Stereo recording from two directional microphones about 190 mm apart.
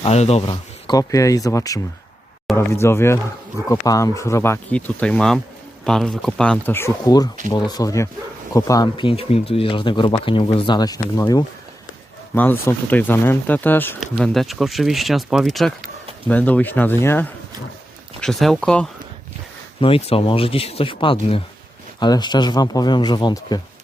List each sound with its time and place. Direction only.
0.0 s speech: 35° left (ahead or behind)
12.3 s speech: 10° left (ahead or behind)
19.8 s speech: 30° left (ahead or behind)